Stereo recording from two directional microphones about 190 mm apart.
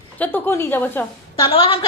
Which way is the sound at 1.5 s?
30° left (ahead or behind).